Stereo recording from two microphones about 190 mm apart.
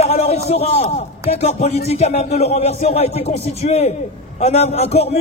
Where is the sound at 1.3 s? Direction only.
35° left (ahead or behind).